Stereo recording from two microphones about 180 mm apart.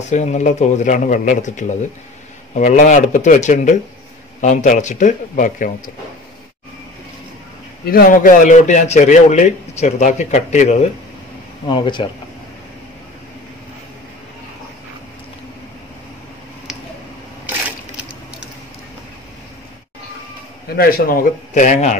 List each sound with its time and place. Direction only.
0.0 s a man's voice: 40° left (ahead or behind)
7.8 s a man's voice: 55° left (ahead or behind)
11.6 s speech: 25° left (ahead or behind)
20.7 s a man's voice: 55° left (ahead or behind)